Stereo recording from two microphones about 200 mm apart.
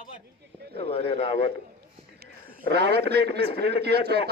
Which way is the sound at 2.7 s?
55° right (ahead or behind).